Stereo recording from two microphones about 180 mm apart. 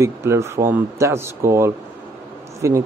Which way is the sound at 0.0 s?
15° right (ahead or behind).